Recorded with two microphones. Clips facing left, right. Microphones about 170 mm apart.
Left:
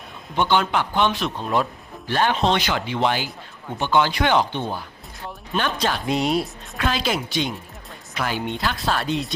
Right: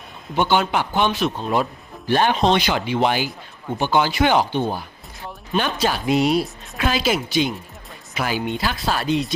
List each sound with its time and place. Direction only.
0.3 s speech: 10° right (ahead or behind)
2.0 s a woman's voice: 15° right (ahead or behind); by 9.3 s centre (ahead or behind)